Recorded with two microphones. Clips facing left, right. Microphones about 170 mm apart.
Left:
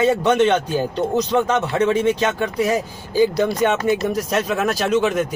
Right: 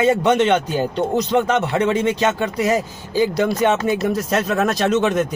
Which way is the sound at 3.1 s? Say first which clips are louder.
Left 1 dB; 10° left (ahead or behind).